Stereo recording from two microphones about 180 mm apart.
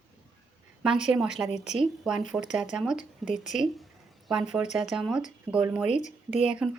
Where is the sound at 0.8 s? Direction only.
5° right (ahead or behind).